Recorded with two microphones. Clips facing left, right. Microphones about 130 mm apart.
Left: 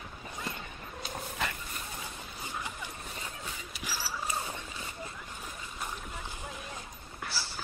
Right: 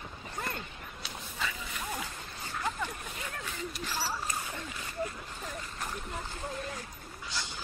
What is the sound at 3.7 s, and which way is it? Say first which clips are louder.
Rodents: right 2 dB; 5° left (ahead or behind).